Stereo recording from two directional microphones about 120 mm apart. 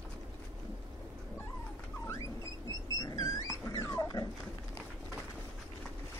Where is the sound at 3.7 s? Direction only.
25° left (ahead or behind).